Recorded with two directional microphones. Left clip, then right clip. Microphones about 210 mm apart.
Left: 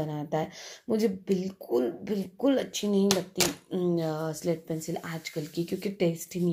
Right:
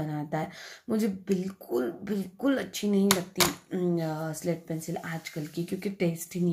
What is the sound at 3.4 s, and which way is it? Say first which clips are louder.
Speech: right 4 dB; 25° right (ahead or behind).